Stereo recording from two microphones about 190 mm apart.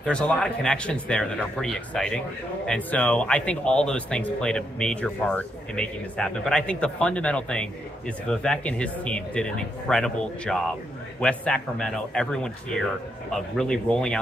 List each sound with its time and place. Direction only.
0.0 s speech: 5° left (ahead or behind)